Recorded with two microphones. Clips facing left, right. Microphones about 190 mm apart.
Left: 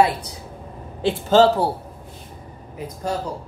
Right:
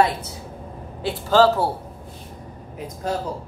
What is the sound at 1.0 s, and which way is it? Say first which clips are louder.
Speech: left 2 dB; 25° left (ahead or behind).